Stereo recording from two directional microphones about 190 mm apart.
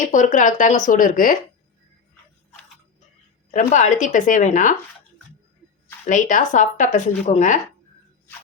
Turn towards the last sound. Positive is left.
turn(degrees=40)  # may be behind; listen again after turning